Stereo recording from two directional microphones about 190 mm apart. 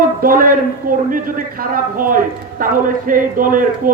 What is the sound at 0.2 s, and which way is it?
Speech, 50° right (ahead or behind).